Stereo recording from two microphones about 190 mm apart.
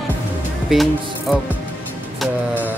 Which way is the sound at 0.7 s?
Centre (ahead or behind).